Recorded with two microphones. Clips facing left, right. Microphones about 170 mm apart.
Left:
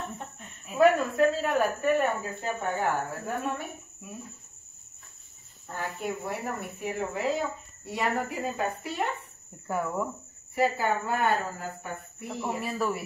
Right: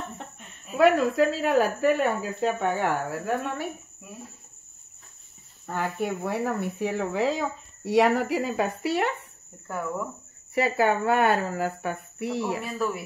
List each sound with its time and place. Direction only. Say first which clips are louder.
0.7 s speech: right 2 dB; 90° right
2.4 s speech: right 5 dB; 80° right
5.7 s a woman's voice: right 5 dB; 70° right (ahead or behind)
6.8 s speech: right 4 dB; 90° right
9.7 s speech: left 1 dB; 5° left (ahead or behind)
10.5 s a woman's voice: right 3 dB; 75° right (ahead or behind)
12.6 s speech: right 1 dB; 5° left (ahead or behind)